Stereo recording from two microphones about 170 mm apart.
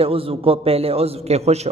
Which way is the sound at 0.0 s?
35° right (ahead or behind).